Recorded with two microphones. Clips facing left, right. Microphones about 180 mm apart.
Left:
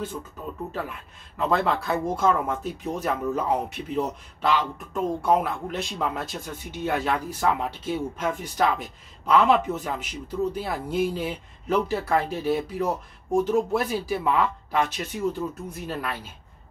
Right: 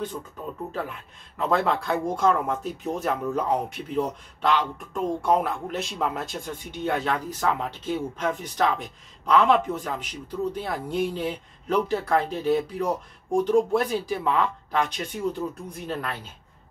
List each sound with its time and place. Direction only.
1.4 s speech: centre (ahead or behind)